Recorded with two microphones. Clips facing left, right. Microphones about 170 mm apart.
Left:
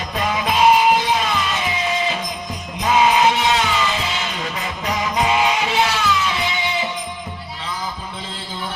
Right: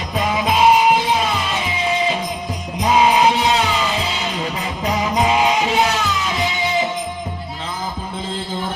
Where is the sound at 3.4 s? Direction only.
35° right (ahead or behind).